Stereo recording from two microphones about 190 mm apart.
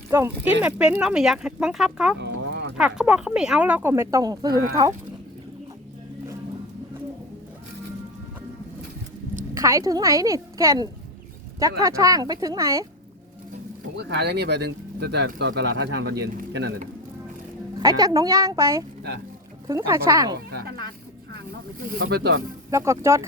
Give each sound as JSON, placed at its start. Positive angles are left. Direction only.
{"t": 0.1, "sound": "speech", "side_deg": -10}
{"t": 2.1, "sound": "a sound", "side_deg": -65}
{"t": 2.7, "sound": "speech", "side_deg": -5}
{"t": 9.6, "sound": "speech", "side_deg": -15}
{"t": 13.9, "sound": "speech", "side_deg": -60}
{"t": 17.8, "sound": "speech", "side_deg": -20}
{"t": 21.8, "sound": "speech", "side_deg": -50}
{"t": 22.7, "sound": "speech", "side_deg": -15}